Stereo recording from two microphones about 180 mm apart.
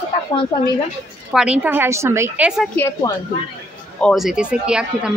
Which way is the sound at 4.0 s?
Centre (ahead or behind).